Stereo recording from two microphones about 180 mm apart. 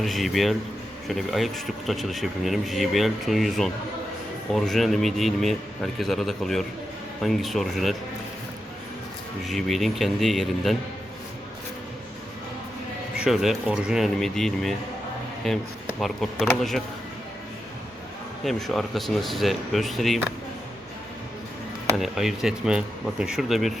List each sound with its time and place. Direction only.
0.0 s speech: centre (ahead or behind)
9.4 s speech: centre (ahead or behind)
13.1 s speech: centre (ahead or behind)
18.4 s speech: centre (ahead or behind)
21.9 s speech: centre (ahead or behind)